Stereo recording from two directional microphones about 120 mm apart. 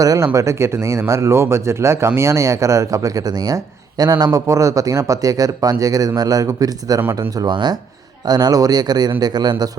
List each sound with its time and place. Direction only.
0.0 s speech: 30° right (ahead or behind)